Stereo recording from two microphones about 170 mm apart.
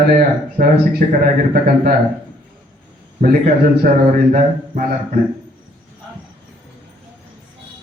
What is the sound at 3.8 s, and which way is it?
A man's voice, 55° right (ahead or behind).